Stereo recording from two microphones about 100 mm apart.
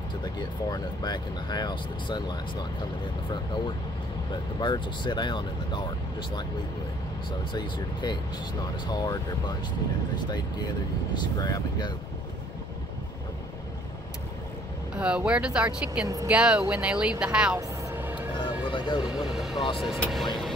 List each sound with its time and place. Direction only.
0.2 s speech: 45° left (ahead or behind)
4.6 s speech: 50° left (ahead or behind)
7.2 s speech: 50° left (ahead or behind)
11.3 s speech: 40° left (ahead or behind)
15.0 s speech: 10° right (ahead or behind)
17.9 s vehicle: 20° right (ahead or behind)
18.4 s a sound: 55° left (ahead or behind)
19.0 s speech: 5° right (ahead or behind)